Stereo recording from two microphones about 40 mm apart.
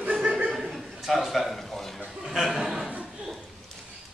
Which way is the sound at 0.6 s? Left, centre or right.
Centre.